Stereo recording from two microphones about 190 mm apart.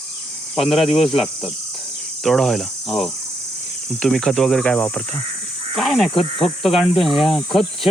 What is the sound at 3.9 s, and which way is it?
Speech, centre (ahead or behind).